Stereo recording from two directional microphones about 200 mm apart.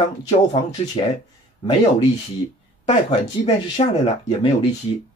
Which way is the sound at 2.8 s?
35° left (ahead or behind).